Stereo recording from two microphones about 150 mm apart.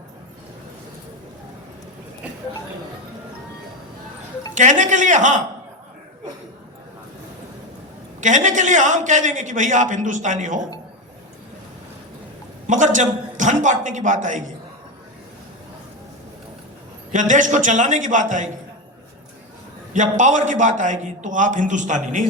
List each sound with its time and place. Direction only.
4.5 s a man's voice: 55° right (ahead or behind)
8.2 s a man's voice: 55° right (ahead or behind)
12.6 s a man's voice: 55° right (ahead or behind)
17.1 s a man's voice: 55° right (ahead or behind)
19.9 s a man's voice: 55° right (ahead or behind)